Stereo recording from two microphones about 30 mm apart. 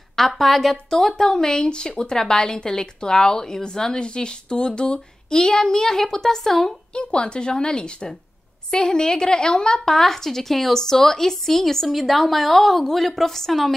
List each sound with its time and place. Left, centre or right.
0.4 s a woman's voice: centre
0.8 s a woman's voice: centre
1.6 s a woman's voice: left; by 6.7 s centre
7.0 s speech: left
9.8 s a woman's voice: centre